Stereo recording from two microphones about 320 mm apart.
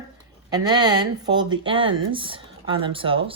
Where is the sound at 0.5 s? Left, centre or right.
Centre.